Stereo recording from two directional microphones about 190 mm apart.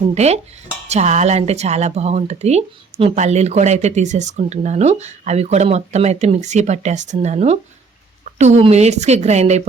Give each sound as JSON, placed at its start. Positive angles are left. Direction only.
{"t": 0.1, "sound": "speech", "side_deg": -35}